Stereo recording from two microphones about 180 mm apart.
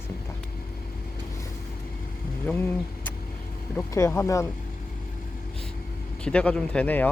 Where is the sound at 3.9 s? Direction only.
15° left (ahead or behind).